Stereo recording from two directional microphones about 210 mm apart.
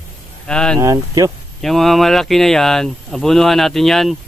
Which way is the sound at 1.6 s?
Centre (ahead or behind).